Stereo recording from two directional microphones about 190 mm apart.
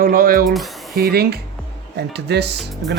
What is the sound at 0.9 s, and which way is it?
Speech, 55° right (ahead or behind).